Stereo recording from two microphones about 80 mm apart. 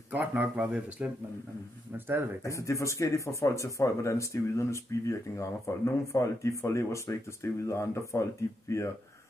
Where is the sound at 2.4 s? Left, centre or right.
Left.